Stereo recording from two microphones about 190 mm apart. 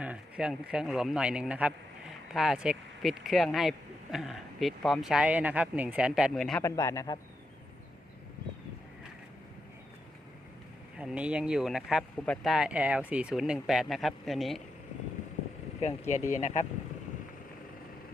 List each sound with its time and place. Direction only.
0.0 s speech: 5° right (ahead or behind)
6.6 s a man's voice: 15° left (ahead or behind)
10.9 s speech: 5° right (ahead or behind)
15.8 s speech: 35° left (ahead or behind)